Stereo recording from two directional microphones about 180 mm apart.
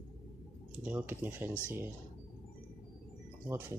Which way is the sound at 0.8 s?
10° right (ahead or behind).